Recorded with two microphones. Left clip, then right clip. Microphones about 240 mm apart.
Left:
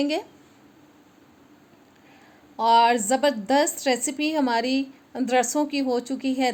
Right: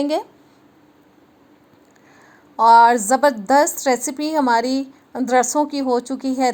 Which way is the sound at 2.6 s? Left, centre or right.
Centre.